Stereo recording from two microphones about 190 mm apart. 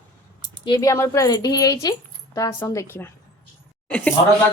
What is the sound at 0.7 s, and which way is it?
A woman's voice, 15° left (ahead or behind).